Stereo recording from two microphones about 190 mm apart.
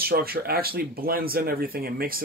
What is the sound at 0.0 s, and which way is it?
Speech, 50° right (ahead or behind).